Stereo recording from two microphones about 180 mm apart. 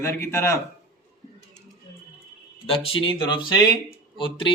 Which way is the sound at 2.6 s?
30° left (ahead or behind).